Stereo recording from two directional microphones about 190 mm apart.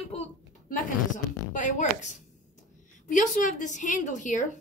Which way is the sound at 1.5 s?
40° left (ahead or behind).